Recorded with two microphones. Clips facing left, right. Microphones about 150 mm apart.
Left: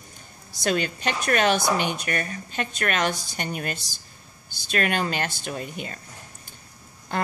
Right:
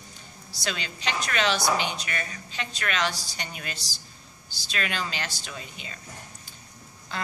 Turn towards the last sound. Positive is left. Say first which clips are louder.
# left 7 dB
turn(degrees=50)  # may be behind; listen again after turning